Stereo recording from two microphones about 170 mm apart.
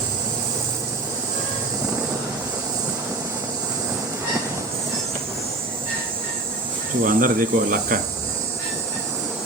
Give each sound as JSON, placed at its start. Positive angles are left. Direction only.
{"t": 7.0, "sound": "cricket", "side_deg": -55}